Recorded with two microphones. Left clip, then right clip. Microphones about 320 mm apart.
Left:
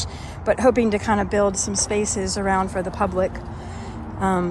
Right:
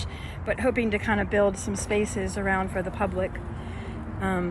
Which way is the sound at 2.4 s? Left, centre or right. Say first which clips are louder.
Left 5 dB; centre.